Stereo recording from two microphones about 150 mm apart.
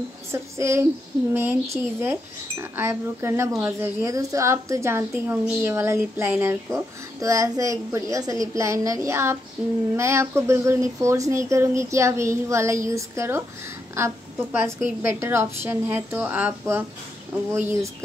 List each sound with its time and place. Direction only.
0.3 s a woman's voice: 20° right (ahead or behind)